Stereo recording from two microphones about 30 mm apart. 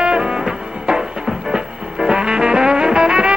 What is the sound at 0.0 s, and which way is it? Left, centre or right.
Music, right.